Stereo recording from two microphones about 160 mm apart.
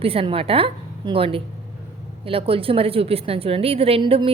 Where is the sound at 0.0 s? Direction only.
35° right (ahead or behind).